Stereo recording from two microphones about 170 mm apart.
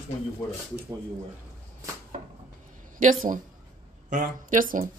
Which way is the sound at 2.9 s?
50° right (ahead or behind).